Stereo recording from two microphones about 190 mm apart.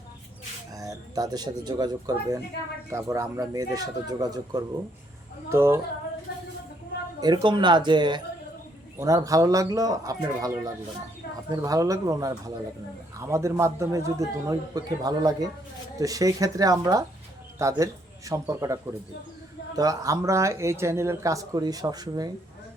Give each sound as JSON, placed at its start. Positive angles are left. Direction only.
{"t": 0.7, "sound": "speech", "side_deg": -20}
{"t": 6.3, "sound": "a sound", "side_deg": 55}
{"t": 7.2, "sound": "speech", "side_deg": -25}